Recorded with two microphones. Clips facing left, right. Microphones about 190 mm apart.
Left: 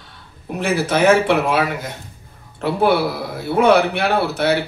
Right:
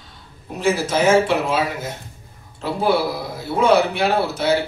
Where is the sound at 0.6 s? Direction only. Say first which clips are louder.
Left 1 dB; 60° left (ahead or behind).